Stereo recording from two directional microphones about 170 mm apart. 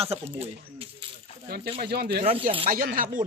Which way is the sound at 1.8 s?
70° right (ahead or behind).